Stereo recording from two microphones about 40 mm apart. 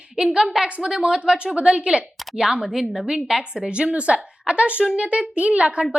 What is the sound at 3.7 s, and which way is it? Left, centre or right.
A woman's voice, right.